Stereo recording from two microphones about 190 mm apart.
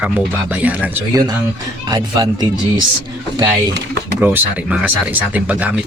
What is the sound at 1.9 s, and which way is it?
Speech, 20° right (ahead or behind).